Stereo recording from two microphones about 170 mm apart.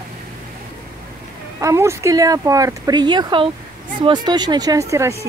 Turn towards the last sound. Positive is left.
turn(degrees=-15)  # may be behind; listen again after turning